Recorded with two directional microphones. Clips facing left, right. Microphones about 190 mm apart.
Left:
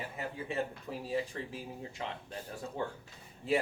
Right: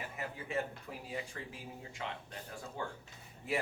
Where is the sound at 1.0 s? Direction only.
35° left (ahead or behind).